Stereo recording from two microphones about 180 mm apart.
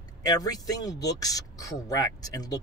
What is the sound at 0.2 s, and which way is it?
Speech, 20° left (ahead or behind).